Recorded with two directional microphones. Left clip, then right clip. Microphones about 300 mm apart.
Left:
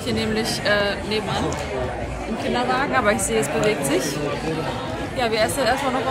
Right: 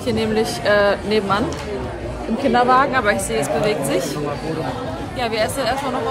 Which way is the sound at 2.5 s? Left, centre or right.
Right.